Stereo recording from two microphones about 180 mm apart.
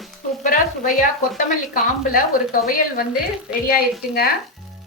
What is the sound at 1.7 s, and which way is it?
A woman's voice, 50° left (ahead or behind).